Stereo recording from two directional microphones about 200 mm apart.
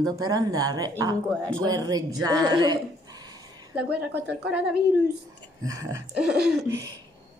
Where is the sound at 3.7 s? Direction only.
5° right (ahead or behind).